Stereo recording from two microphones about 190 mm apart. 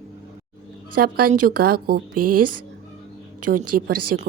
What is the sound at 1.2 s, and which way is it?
Speech, 50° right (ahead or behind).